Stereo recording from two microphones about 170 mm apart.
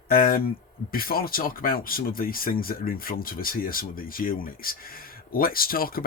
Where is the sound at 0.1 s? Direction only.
60° left (ahead or behind).